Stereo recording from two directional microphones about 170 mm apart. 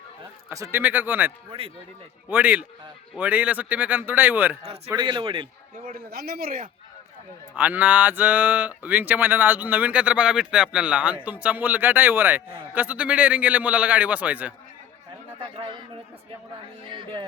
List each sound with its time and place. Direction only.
0.5 s speech: 15° right (ahead or behind)
2.3 s speech: 10° right (ahead or behind)
4.9 s speech: 25° right (ahead or behind)
5.8 s speech: 60° right (ahead or behind)
7.5 s speech: 10° right (ahead or behind)
15.5 s a man's voice: 30° right (ahead or behind)
16.9 s speech: 30° right (ahead or behind)